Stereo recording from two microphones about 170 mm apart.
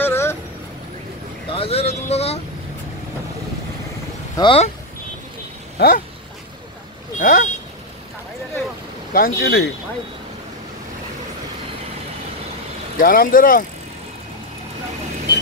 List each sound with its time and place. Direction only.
0.0 s vehicle: 15° left (ahead or behind)
1.5 s speech: 35° left (ahead or behind)
4.4 s speech: 30° left (ahead or behind)
5.8 s speech: 60° left (ahead or behind)
7.2 s speech: 50° left (ahead or behind)
9.1 s speech: 65° left (ahead or behind)
12.9 s speech: 55° left (ahead or behind)